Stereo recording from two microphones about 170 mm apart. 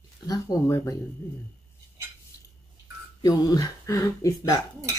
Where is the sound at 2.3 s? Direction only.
20° left (ahead or behind).